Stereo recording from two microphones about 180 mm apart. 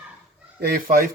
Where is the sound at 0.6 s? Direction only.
55° right (ahead or behind).